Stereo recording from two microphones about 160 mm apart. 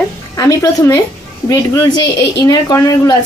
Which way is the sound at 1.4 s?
20° left (ahead or behind).